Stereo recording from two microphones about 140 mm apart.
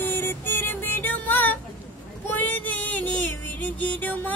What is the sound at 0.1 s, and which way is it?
Music, 15° left (ahead or behind).